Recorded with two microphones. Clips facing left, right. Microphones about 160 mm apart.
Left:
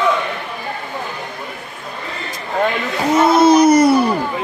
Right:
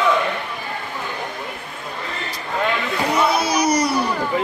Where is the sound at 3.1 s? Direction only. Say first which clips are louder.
Left 10 dB; 50° left (ahead or behind).